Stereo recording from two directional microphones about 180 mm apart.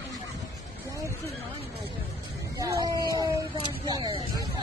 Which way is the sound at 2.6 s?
20° right (ahead or behind).